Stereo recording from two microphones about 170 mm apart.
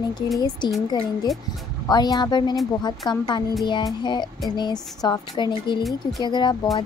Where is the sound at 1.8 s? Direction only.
25° left (ahead or behind).